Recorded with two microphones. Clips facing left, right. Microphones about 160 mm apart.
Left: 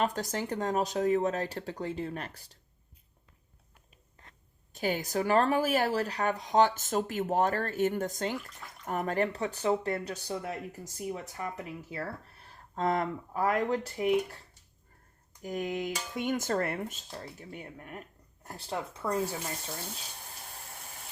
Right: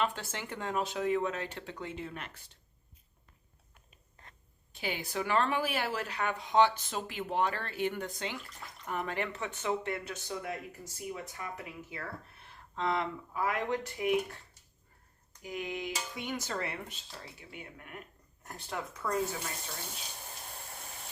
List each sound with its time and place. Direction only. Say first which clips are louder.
0.0 s speech: left 4 dB; 40° left (ahead or behind)
4.7 s speech: left 6 dB; 45° left (ahead or behind)
15.4 s speech: left 5 dB; 45° left (ahead or behind); by 19.3 s 30° left (ahead or behind)